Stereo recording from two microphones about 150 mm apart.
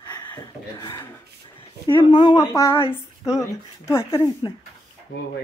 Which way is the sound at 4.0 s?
35° left (ahead or behind).